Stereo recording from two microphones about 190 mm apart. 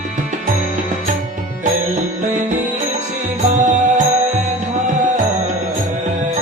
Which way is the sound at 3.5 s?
40° right (ahead or behind).